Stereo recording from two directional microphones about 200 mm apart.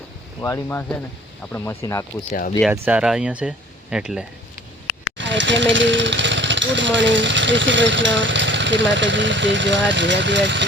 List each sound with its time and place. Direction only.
0.4 s speech: 15° left (ahead or behind)
2.7 s speech: 10° right (ahead or behind)
5.1 s speech: 65° right (ahead or behind)